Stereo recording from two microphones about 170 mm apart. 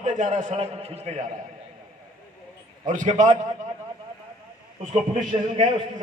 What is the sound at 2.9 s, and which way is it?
Speech, 50° right (ahead or behind).